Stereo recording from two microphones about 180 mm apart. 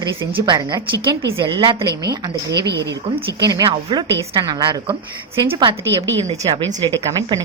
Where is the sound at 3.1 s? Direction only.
20° right (ahead or behind).